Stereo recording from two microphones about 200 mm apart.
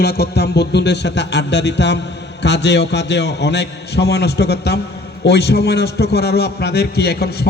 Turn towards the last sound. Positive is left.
turn(degrees=55)  # may be behind; listen again after turning